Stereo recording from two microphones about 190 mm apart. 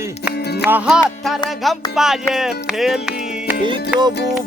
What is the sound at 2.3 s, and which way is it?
Speech, centre (ahead or behind).